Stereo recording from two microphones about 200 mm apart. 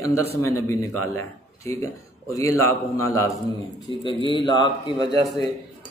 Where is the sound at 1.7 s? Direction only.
15° left (ahead or behind).